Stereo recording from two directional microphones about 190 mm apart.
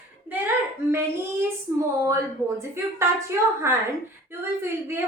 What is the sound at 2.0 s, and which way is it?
A woman's voice, 15° right (ahead or behind).